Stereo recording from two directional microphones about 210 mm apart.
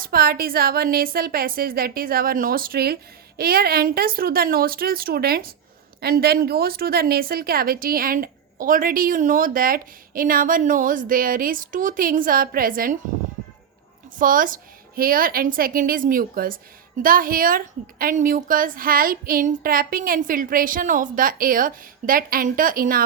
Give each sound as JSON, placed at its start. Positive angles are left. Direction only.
{"t": 0.0, "sound": "a woman's voice", "side_deg": -45}
{"t": 14.2, "sound": "a woman's voice", "side_deg": -40}